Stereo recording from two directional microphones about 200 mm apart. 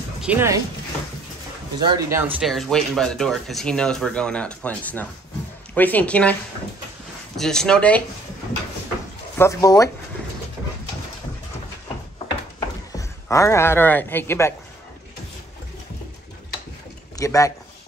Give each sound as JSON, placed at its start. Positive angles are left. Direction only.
{"t": 0.2, "sound": "speech", "side_deg": -10}
{"t": 1.8, "sound": "speech", "side_deg": -20}
{"t": 7.3, "sound": "speech", "side_deg": 5}
{"t": 9.4, "sound": "speech", "side_deg": 15}
{"t": 12.5, "sound": "a sound", "side_deg": 15}
{"t": 17.2, "sound": "a man's voice", "side_deg": 15}